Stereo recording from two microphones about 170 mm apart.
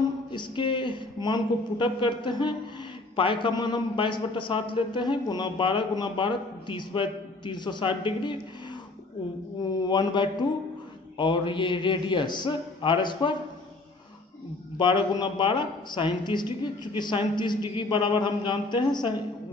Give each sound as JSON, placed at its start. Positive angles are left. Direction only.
{"t": 0.3, "sound": "a man's voice", "side_deg": 30}
{"t": 9.8, "sound": "a man's voice", "side_deg": 25}
{"t": 14.8, "sound": "a man's voice", "side_deg": 30}